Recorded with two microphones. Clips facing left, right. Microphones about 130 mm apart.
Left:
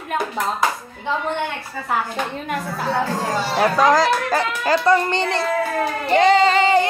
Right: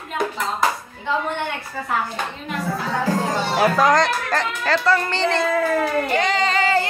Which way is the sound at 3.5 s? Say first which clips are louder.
Left 1 dB; centre (ahead or behind).